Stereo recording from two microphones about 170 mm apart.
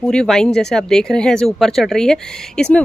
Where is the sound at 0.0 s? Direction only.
5° left (ahead or behind).